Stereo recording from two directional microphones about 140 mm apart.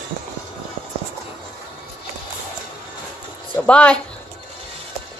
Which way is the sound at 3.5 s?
10° left (ahead or behind).